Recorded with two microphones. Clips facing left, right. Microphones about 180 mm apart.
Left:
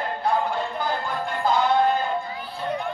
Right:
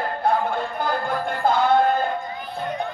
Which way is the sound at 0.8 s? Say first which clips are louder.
Right 3 dB; 55° right (ahead or behind).